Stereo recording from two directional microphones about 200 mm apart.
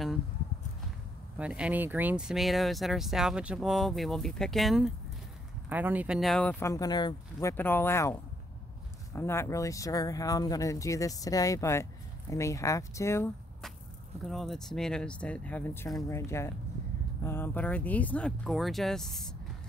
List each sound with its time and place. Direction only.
1.4 s speech: 5° right (ahead or behind); by 13.3 s 15° left (ahead or behind)
14.2 s speech: centre (ahead or behind)